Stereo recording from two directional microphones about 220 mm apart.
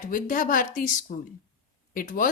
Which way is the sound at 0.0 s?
35° left (ahead or behind).